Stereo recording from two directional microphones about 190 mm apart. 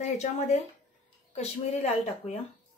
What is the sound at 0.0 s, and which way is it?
Speech, 35° left (ahead or behind).